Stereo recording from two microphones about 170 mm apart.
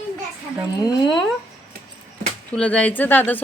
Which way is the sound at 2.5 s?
5° left (ahead or behind).